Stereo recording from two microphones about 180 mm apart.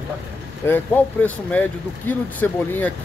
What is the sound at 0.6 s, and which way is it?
Speech, 10° left (ahead or behind).